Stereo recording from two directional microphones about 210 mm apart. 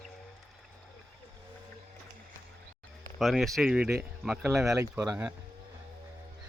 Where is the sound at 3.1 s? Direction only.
Centre (ahead or behind).